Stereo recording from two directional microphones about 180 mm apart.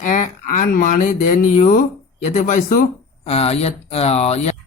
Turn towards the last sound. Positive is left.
turn(degrees=35)  # may be behind; listen again after turning